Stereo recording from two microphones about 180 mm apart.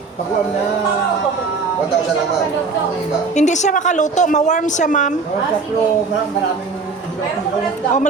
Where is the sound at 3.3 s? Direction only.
40° left (ahead or behind).